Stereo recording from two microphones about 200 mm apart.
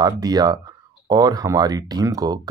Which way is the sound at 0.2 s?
20° right (ahead or behind).